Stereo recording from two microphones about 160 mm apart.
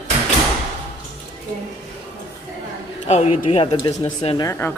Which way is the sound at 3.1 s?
45° left (ahead or behind).